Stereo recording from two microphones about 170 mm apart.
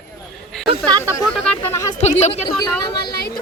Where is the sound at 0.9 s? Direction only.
20° right (ahead or behind).